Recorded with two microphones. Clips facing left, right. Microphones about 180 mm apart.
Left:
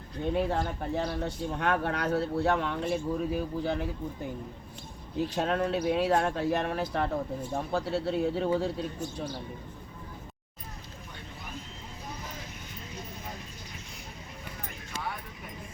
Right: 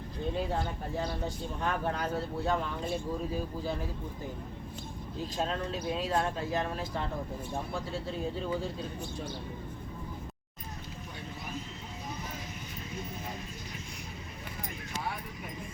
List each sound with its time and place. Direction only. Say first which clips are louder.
0.3 s speech: left 5 dB; 65° left (ahead or behind)
5.2 s speech: left 6 dB; 70° left (ahead or behind)